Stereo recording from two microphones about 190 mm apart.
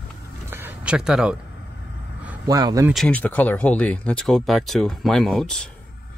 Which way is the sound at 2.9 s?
5° left (ahead or behind).